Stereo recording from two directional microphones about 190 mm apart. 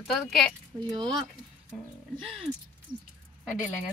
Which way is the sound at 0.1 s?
Centre (ahead or behind).